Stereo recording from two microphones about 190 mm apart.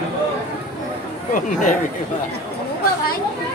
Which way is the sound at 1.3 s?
45° left (ahead or behind).